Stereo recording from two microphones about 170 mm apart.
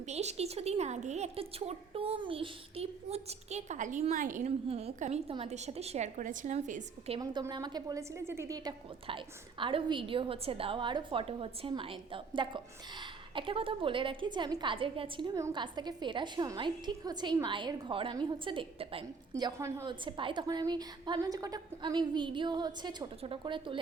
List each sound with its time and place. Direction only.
0.0 s a woman's voice: 40° right (ahead or behind)
7.2 s a woman's voice: 25° right (ahead or behind)
19.3 s a woman's voice: 20° right (ahead or behind)